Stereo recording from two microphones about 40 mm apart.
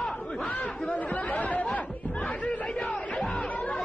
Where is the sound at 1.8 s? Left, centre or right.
Left.